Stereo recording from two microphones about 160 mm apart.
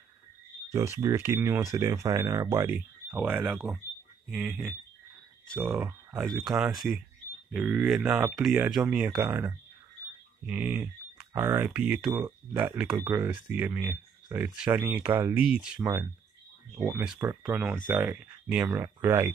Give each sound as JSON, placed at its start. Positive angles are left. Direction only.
{"t": 0.7, "sound": "speech", "side_deg": -15}